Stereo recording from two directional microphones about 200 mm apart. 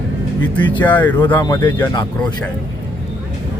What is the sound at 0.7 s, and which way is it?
Speech, 25° left (ahead or behind).